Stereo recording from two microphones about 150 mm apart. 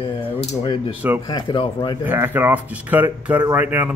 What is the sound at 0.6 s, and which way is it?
Speech, 35° left (ahead or behind).